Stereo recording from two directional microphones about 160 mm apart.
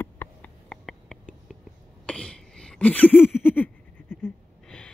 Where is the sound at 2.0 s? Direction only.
5° left (ahead or behind).